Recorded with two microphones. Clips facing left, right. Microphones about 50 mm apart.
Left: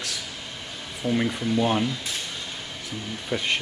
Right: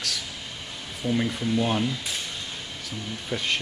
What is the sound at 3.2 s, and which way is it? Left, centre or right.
Speech, centre.